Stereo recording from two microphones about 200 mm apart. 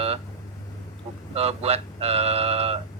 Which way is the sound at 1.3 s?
30° right (ahead or behind).